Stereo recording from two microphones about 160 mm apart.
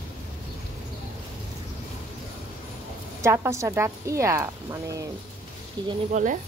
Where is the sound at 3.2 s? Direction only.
15° right (ahead or behind).